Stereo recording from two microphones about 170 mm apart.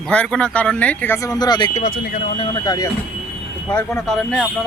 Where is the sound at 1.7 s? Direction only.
55° left (ahead or behind).